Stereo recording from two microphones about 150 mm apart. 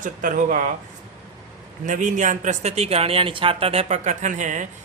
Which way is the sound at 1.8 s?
60° right (ahead or behind).